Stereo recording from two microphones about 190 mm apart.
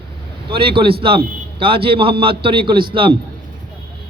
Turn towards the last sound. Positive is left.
turn(degrees=-25)  # may be behind; listen again after turning